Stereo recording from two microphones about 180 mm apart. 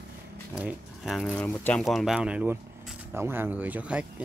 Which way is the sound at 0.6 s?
5° right (ahead or behind).